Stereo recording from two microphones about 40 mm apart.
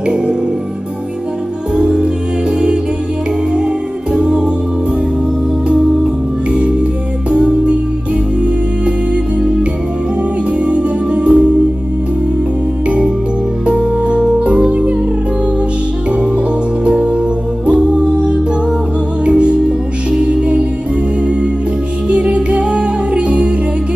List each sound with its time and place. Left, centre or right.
1.8 s music: centre
3.5 s music: right
6.5 s music: right
10.6 s music: right
12.8 s music: right
16.1 s music: right
22.1 s music: right